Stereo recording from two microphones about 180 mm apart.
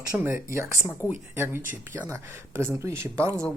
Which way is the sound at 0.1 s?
10° right (ahead or behind).